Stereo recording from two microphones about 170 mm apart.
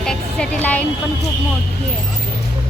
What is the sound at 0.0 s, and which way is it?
Music, 5° left (ahead or behind).